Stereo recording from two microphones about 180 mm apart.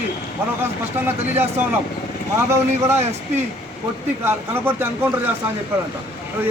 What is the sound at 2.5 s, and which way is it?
Speech, 15° right (ahead or behind).